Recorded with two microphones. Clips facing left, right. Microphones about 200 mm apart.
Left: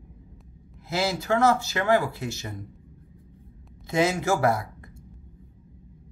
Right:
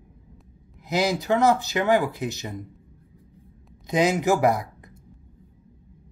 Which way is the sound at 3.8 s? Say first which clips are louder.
Right 2 dB; 15° right (ahead or behind).